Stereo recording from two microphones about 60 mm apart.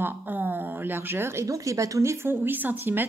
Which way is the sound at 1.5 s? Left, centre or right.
Right.